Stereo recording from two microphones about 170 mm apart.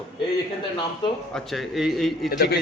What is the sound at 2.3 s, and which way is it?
Speech, 60° left (ahead or behind).